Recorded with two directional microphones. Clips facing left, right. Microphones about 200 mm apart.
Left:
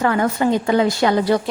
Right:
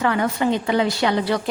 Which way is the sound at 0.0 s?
45° left (ahead or behind).